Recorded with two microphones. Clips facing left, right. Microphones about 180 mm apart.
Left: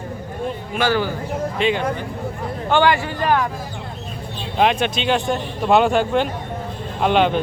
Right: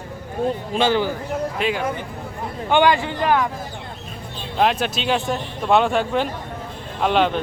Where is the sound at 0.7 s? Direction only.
25° right (ahead or behind).